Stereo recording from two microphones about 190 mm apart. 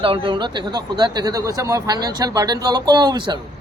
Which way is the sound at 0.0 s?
25° right (ahead or behind).